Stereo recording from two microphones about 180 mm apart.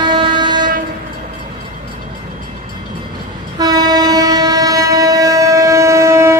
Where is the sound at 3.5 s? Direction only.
20° right (ahead or behind).